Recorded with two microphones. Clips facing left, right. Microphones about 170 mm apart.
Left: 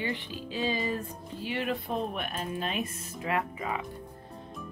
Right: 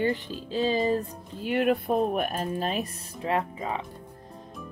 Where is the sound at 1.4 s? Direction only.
55° right (ahead or behind); by 3.8 s 30° right (ahead or behind).